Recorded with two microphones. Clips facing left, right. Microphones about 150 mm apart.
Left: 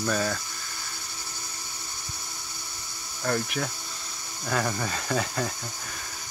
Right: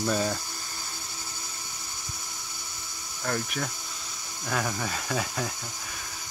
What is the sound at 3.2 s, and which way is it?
Speech, centre (ahead or behind).